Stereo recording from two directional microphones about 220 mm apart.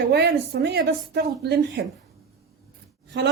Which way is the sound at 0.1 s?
50° right (ahead or behind).